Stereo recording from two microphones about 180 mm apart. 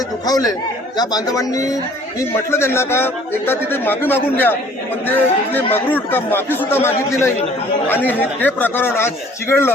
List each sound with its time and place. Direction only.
0.3 s a man's voice: 20° left (ahead or behind)